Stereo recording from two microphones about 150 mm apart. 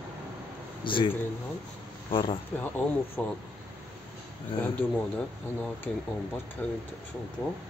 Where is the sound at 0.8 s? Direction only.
35° left (ahead or behind).